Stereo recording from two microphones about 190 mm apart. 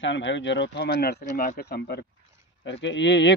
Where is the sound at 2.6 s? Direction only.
70° left (ahead or behind).